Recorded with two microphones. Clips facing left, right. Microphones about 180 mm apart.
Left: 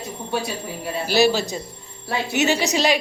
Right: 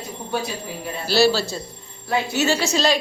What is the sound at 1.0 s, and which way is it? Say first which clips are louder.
A woman's voice: even; 15° left (ahead or behind).